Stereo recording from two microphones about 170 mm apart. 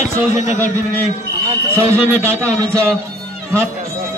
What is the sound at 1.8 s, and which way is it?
A man's voice, 15° right (ahead or behind).